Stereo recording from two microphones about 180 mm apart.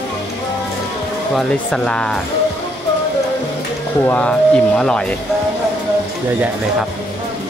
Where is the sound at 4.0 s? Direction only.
10° left (ahead or behind).